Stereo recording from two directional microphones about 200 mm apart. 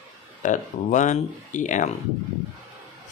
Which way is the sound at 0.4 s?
40° left (ahead or behind).